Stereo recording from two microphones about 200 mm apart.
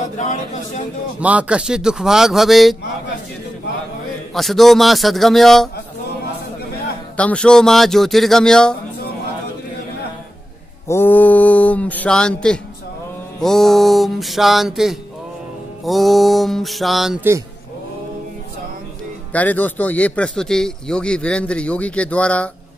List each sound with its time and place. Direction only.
0.2 s speech: 35° left (ahead or behind)
1.2 s speech: 5° right (ahead or behind)
4.3 s speech: centre (ahead or behind)
7.2 s speech: 5° left (ahead or behind)
10.9 s speech: 10° left (ahead or behind)
19.3 s speech: 10° left (ahead or behind)